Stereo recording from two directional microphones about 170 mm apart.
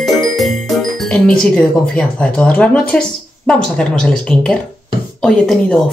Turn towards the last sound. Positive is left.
turn(degrees=5)  # may be behind; listen again after turning